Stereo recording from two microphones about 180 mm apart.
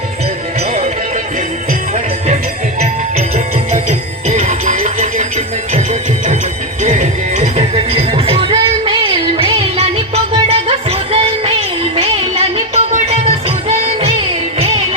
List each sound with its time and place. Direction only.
2.8 s music: 40° right (ahead or behind)